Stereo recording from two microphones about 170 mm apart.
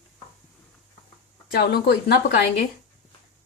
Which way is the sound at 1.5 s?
70° left (ahead or behind).